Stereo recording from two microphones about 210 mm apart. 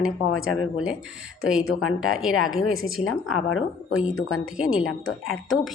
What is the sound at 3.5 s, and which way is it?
Speech, 80° left.